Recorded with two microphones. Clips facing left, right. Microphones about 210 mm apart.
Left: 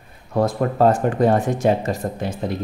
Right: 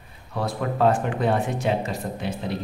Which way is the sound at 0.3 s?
45° left (ahead or behind).